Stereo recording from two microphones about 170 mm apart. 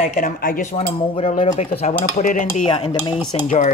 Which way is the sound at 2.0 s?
55° left (ahead or behind).